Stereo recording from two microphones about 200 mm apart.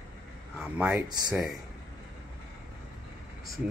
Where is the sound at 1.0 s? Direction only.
20° right (ahead or behind).